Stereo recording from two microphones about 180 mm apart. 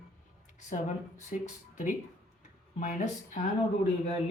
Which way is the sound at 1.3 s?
45° left (ahead or behind).